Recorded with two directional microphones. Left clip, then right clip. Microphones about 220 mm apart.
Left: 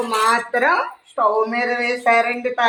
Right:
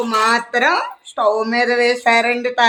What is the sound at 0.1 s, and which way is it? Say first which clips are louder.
Speech: right 2 dB; 30° right (ahead or behind).